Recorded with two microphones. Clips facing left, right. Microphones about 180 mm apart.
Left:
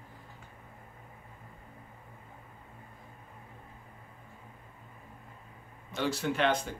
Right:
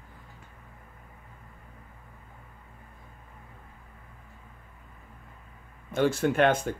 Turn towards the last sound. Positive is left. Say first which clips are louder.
# right 6 dB
turn(degrees=-50)  # may be behind; listen again after turning